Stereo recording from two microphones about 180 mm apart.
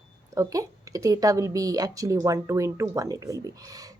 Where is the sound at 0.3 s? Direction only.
20° right (ahead or behind).